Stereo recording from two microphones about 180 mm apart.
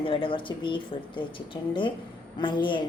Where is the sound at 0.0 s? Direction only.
30° left (ahead or behind).